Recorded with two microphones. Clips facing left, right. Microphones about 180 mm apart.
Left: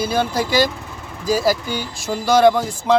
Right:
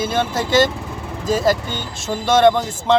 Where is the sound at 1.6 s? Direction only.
25° right (ahead or behind).